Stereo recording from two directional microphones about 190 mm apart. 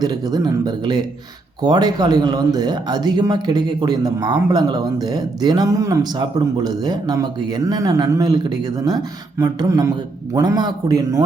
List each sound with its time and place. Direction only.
0.0 s speech: 20° right (ahead or behind)